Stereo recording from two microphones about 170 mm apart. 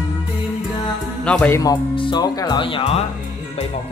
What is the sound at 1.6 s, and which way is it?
Speech, 25° left (ahead or behind).